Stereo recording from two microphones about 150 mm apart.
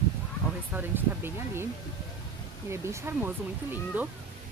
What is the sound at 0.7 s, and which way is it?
Speech, 15° right (ahead or behind).